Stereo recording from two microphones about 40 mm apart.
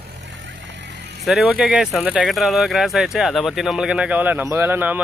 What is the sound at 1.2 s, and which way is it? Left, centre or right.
Speech, centre.